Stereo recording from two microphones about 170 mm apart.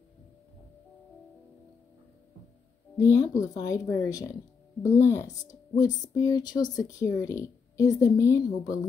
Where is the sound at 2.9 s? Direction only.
15° left (ahead or behind).